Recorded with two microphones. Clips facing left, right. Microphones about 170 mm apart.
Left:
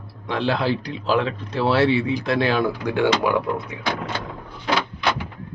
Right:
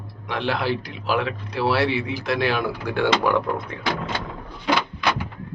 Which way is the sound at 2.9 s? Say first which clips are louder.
Even; 15° left (ahead or behind).